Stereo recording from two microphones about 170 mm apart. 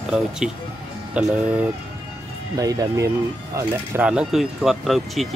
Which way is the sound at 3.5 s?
5° right (ahead or behind).